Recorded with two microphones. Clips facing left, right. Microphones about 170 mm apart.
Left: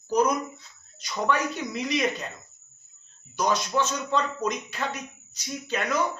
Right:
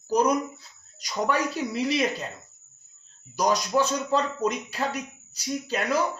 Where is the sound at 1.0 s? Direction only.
35° right (ahead or behind).